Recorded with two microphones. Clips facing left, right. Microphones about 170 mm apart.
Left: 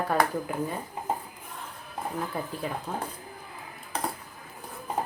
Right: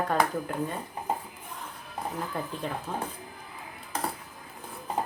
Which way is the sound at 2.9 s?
10° left (ahead or behind).